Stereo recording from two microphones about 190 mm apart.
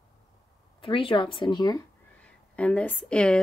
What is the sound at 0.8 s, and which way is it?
Speech, 25° left (ahead or behind).